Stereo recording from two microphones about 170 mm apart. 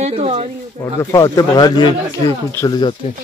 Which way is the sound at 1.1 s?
20° left (ahead or behind).